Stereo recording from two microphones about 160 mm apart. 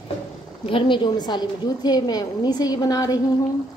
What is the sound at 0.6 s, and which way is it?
A woman's voice, 30° left (ahead or behind).